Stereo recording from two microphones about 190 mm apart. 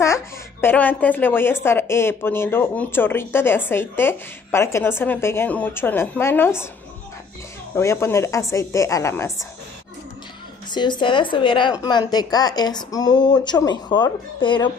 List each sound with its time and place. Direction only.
0.0 s a woman's voice: 15° left (ahead or behind)
7.7 s a woman's voice: 15° left (ahead or behind)
10.7 s a woman's voice: 25° left (ahead or behind)